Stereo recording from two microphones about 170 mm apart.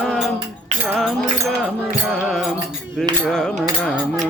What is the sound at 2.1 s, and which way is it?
Music, centre (ahead or behind).